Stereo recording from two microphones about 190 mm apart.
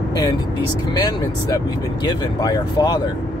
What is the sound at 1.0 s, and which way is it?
Speech, 20° left (ahead or behind).